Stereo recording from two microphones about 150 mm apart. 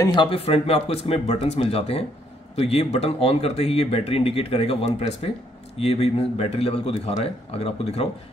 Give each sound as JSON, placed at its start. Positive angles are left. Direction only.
{"t": 0.0, "sound": "speech", "side_deg": 30}